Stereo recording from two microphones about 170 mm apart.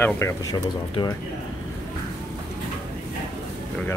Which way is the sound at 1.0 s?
30° left (ahead or behind).